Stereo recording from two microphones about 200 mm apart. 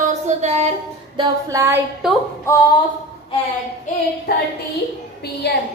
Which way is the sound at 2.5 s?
15° left (ahead or behind).